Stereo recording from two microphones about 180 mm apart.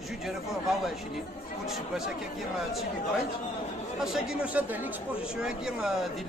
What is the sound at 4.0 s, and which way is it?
Speech, 5° right (ahead or behind).